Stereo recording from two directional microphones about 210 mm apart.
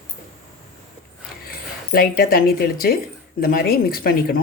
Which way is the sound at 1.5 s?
45° left (ahead or behind).